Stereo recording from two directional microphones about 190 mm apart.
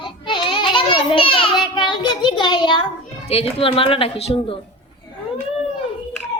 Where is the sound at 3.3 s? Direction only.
30° left (ahead or behind).